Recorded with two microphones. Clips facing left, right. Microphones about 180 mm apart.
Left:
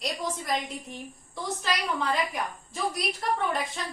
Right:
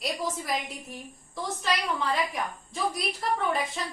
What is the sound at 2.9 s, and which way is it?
Speech, centre (ahead or behind).